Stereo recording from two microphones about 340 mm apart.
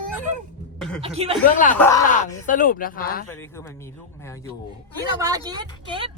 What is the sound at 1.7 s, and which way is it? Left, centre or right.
Speech, centre.